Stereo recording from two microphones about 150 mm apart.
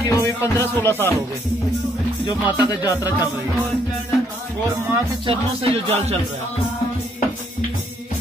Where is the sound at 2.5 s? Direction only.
25° left (ahead or behind).